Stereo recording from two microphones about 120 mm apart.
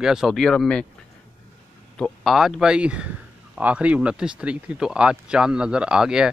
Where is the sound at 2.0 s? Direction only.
Centre (ahead or behind).